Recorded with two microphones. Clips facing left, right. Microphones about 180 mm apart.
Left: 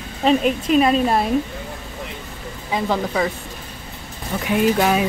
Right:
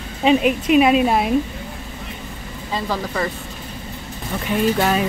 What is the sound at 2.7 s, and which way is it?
Speech, 15° left (ahead or behind).